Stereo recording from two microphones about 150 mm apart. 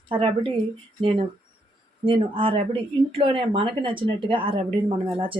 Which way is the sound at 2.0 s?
35° right (ahead or behind).